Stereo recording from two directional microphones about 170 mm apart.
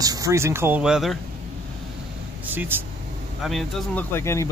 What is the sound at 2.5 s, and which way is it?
Speech, 10° right (ahead or behind).